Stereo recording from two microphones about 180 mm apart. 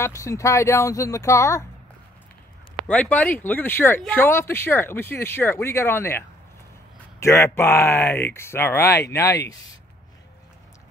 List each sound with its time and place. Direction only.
0.0 s speech: 15° left (ahead or behind)
2.9 s speech: 10° left (ahead or behind)